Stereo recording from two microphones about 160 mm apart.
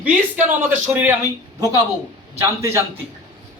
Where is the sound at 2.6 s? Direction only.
15° right (ahead or behind).